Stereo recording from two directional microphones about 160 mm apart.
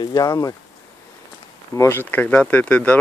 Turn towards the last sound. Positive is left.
turn(degrees=10)  # may be behind; listen again after turning